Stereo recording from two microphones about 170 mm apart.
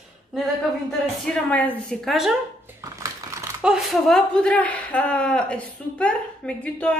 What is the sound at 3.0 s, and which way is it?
Typing, 15° right (ahead or behind).